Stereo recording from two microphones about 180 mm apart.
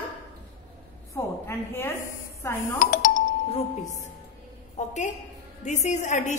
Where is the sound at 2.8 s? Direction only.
45° left (ahead or behind).